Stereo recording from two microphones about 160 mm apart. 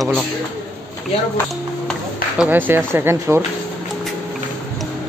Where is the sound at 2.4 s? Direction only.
10° right (ahead or behind).